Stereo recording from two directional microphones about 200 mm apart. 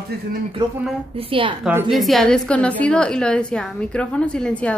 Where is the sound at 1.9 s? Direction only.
Centre (ahead or behind).